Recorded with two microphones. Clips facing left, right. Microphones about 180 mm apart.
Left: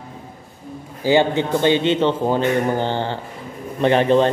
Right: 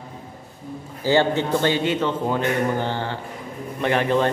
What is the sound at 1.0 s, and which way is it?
Speech, 15° left (ahead or behind).